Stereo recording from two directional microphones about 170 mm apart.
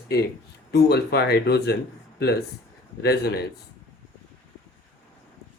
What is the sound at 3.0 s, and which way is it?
Speech, 75° left (ahead or behind).